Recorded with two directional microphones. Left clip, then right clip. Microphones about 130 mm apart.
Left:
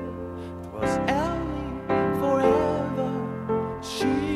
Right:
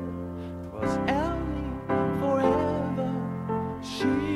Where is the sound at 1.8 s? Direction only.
20° right (ahead or behind).